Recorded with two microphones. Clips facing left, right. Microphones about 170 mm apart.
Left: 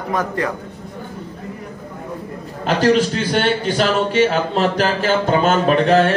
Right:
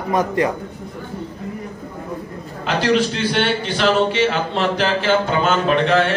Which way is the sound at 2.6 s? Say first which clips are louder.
Left 3 dB; 40° left (ahead or behind).